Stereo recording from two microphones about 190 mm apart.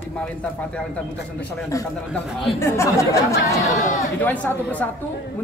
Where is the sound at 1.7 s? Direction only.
15° left (ahead or behind).